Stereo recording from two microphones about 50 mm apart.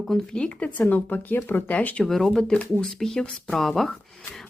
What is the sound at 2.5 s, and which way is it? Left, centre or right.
Speech, left.